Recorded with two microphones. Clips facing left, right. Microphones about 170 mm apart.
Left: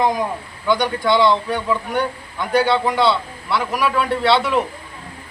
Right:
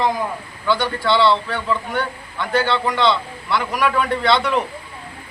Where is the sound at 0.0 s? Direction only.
15° left (ahead or behind).